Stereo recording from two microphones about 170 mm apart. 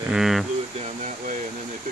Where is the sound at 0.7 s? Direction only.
45° right (ahead or behind).